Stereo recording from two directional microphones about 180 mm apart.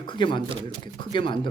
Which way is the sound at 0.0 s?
25° left (ahead or behind).